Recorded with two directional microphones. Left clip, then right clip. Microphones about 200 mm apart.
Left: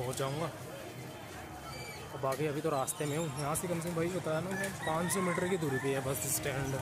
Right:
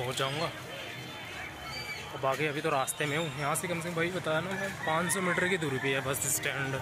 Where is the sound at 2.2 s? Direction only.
5° left (ahead or behind).